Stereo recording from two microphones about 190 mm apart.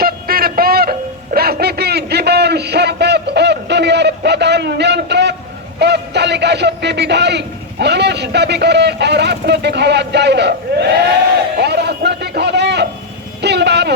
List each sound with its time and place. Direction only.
0.0 s music: 50° right (ahead or behind)
5.8 s a man's voice: 60° right (ahead or behind)
11.6 s a sound: 60° right (ahead or behind)
13.4 s vehicle: 60° right (ahead or behind)